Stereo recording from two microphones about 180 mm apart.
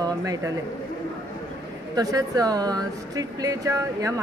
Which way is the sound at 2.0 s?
20° right (ahead or behind).